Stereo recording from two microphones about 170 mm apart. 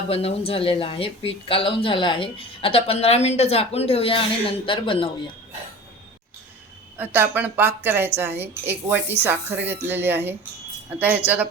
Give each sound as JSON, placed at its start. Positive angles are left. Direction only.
{"t": 0.1, "sound": "speech", "side_deg": 35}
{"t": 6.9, "sound": "a woman's voice", "side_deg": -10}